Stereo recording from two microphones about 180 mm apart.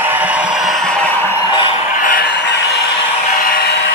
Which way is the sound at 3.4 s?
60° left (ahead or behind).